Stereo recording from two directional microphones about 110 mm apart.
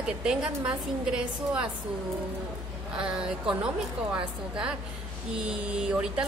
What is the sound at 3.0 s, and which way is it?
A woman's voice, 10° right (ahead or behind).